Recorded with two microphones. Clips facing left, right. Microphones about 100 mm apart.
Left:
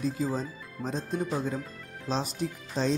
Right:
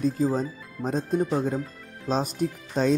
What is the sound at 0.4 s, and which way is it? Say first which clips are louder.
Speech: right 5 dB; 45° right (ahead or behind).